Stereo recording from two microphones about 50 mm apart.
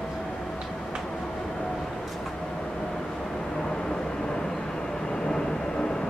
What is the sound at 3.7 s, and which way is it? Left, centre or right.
Vehicle, centre.